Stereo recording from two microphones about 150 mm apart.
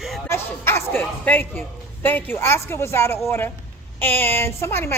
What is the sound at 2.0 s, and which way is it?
A woman's voice, 10° left (ahead or behind).